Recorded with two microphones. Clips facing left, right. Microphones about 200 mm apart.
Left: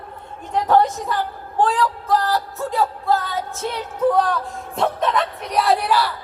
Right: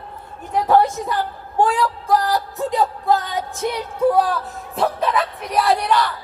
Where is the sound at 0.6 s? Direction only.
10° right (ahead or behind); by 6.1 s 5° left (ahead or behind).